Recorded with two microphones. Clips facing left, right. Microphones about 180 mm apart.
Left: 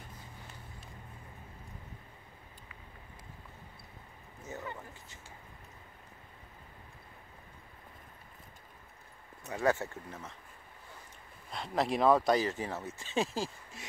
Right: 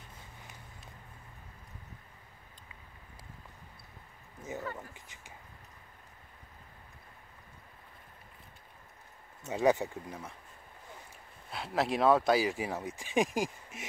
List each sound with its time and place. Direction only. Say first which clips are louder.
4.9 s speech: left 1 dB; 15° right (ahead or behind)
9.5 s speech: right 3 dB; 20° right (ahead or behind)
11.5 s speech: even; 5° right (ahead or behind)